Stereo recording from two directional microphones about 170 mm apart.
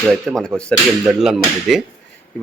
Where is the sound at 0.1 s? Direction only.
5° left (ahead or behind).